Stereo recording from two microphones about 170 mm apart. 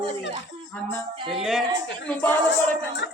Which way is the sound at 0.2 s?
90° left.